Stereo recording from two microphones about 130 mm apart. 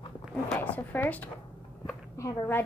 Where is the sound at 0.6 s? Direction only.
15° left (ahead or behind).